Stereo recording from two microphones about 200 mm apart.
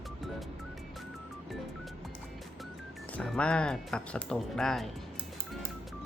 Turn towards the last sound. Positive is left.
turn(degrees=0)  # may be behind; listen again after turning